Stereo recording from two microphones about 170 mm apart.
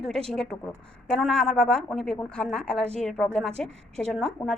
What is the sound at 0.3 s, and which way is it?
A woman's voice, 5° left (ahead or behind).